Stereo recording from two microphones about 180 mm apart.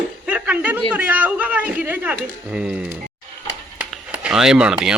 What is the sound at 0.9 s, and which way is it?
Speech, 10° right (ahead or behind).